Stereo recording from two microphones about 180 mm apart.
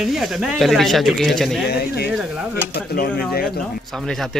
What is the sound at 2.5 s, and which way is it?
Speech, 60° left (ahead or behind).